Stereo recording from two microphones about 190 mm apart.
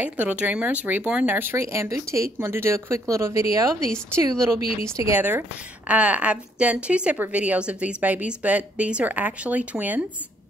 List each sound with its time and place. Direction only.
0.0 s a woman's voice: 10° right (ahead or behind)